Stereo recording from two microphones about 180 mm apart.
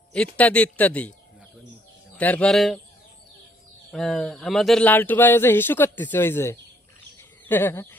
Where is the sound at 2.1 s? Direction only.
10° left (ahead or behind).